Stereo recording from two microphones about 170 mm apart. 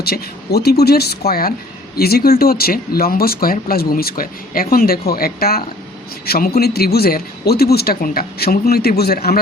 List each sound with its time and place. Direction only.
0.0 s speech: 65° left (ahead or behind)